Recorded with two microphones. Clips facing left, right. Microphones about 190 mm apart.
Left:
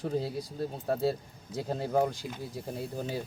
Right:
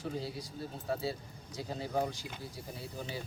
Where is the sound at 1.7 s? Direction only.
50° left (ahead or behind).